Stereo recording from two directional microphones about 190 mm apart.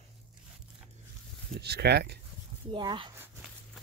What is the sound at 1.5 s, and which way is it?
Speech, 60° right (ahead or behind).